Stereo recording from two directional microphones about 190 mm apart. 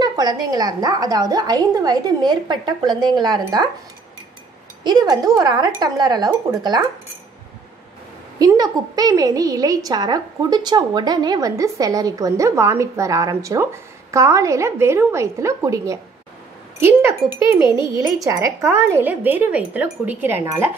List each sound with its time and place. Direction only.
0.0 s a woman's voice: 20° right (ahead or behind)
4.8 s a woman's voice: 20° right (ahead or behind)
8.4 s a woman's voice: 20° right (ahead or behind)